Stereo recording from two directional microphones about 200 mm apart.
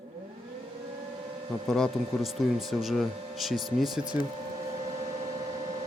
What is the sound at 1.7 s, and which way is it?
Speech, centre (ahead or behind).